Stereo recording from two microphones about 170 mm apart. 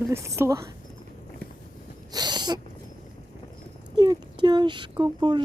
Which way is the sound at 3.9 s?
25° right (ahead or behind).